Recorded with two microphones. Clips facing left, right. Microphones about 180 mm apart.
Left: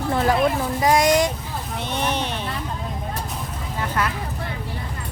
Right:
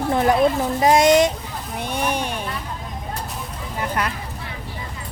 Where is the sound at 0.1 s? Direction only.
20° right (ahead or behind).